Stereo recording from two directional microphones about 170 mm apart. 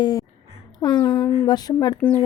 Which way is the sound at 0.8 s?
15° left (ahead or behind).